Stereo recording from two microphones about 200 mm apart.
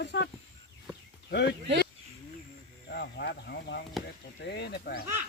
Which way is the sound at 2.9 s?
55° left (ahead or behind).